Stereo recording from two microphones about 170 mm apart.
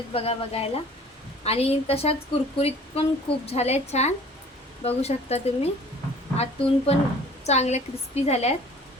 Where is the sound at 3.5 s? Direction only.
40° left (ahead or behind).